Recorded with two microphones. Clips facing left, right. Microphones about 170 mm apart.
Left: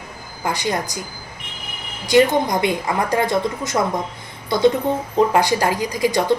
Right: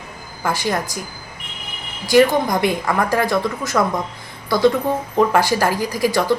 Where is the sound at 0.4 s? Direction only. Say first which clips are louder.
Right 1 dB; 20° left (ahead or behind).